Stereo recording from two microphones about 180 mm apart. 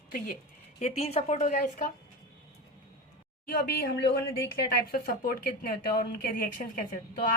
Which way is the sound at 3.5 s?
55° left (ahead or behind).